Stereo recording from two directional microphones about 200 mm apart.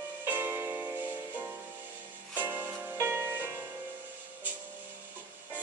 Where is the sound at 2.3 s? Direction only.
10° right (ahead or behind).